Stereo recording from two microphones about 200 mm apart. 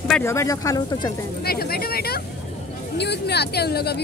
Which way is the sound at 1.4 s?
50° left (ahead or behind).